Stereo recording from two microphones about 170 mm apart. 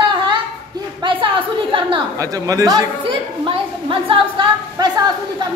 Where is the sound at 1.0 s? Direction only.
30° right (ahead or behind).